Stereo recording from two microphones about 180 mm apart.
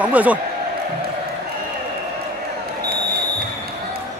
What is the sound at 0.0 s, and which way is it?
Speech, 10° right (ahead or behind).